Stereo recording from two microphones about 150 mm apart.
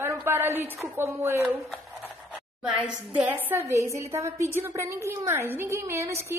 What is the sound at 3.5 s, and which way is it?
A woman's voice, 15° right (ahead or behind).